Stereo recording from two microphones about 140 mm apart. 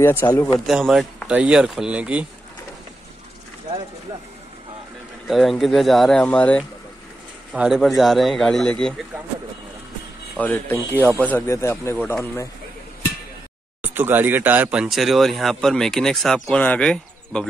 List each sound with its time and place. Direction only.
0.0 s speech: 15° left (ahead or behind)
0.7 s speech: centre (ahead or behind)
5.3 s speech: centre (ahead or behind)
7.5 s speech: 5° right (ahead or behind)
10.4 s speech: 15° left (ahead or behind)
13.8 s speech: 15° right (ahead or behind); by 17.5 s 5° left (ahead or behind)